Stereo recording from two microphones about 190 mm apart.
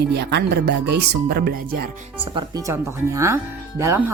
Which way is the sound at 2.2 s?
25° right (ahead or behind).